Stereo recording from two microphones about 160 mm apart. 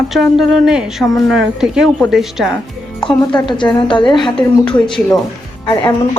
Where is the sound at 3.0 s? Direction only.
30° left (ahead or behind).